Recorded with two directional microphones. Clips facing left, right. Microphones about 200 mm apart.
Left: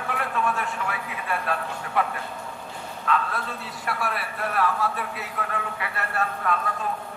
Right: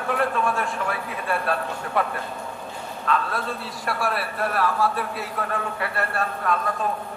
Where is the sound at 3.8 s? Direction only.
35° right (ahead or behind).